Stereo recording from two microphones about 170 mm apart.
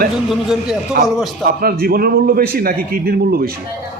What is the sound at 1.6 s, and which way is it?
A man's voice, 60° right (ahead or behind).